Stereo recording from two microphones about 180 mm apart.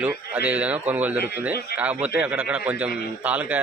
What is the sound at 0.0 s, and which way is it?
A man's voice, 10° right (ahead or behind).